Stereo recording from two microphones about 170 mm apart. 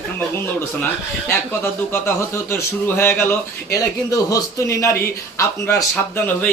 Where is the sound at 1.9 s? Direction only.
15° left (ahead or behind).